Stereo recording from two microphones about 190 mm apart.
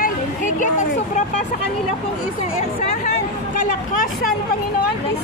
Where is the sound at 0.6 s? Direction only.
40° left (ahead or behind).